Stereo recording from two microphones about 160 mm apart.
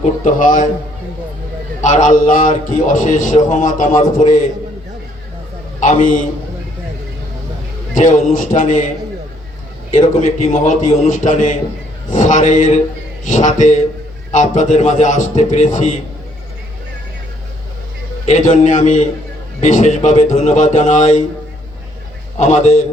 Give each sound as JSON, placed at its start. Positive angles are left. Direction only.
{"t": 0.0, "sound": "a man's voice", "side_deg": 55}
{"t": 1.8, "sound": "a man's voice", "side_deg": 50}
{"t": 5.8, "sound": "a man's voice", "side_deg": 55}
{"t": 7.9, "sound": "a man's voice", "side_deg": 50}
{"t": 9.9, "sound": "a man's voice", "side_deg": 50}
{"t": 18.3, "sound": "a man's voice", "side_deg": 50}
{"t": 22.4, "sound": "a man's voice", "side_deg": 45}